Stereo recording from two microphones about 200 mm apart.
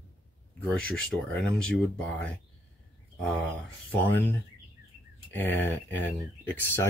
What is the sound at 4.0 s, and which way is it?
Speech, 10° left (ahead or behind).